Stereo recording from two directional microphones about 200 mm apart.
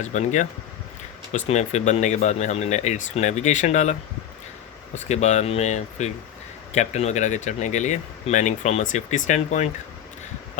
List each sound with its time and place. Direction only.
0.0 s speech: 35° left (ahead or behind)
1.5 s speech: 35° left (ahead or behind)
5.0 s speech: 35° left (ahead or behind)